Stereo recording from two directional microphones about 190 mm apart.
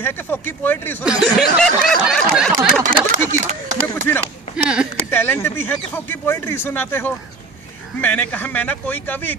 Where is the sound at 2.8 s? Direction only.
40° right (ahead or behind).